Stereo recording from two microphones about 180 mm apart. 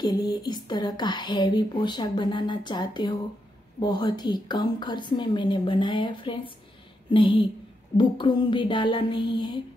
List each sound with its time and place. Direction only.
0.0 s speech: 20° left (ahead or behind)